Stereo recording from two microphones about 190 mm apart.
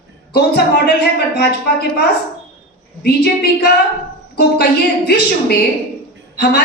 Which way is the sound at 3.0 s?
55° left (ahead or behind).